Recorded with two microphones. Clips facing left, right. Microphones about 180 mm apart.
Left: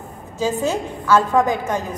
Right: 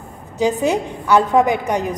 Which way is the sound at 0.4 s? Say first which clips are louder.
Right 3 dB; 15° right (ahead or behind).